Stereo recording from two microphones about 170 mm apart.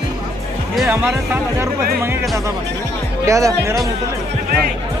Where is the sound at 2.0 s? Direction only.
15° right (ahead or behind).